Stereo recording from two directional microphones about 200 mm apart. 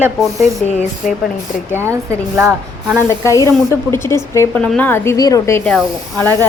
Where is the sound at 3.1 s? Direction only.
15° left (ahead or behind).